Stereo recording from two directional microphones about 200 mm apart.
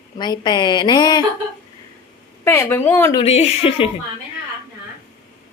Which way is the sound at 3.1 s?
30° left (ahead or behind).